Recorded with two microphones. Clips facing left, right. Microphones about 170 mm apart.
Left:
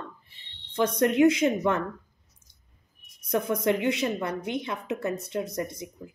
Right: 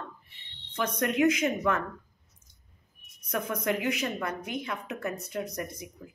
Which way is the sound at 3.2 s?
30° left (ahead or behind).